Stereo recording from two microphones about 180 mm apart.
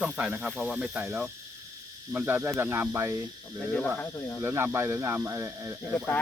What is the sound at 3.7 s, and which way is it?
Speech, 5° left (ahead or behind).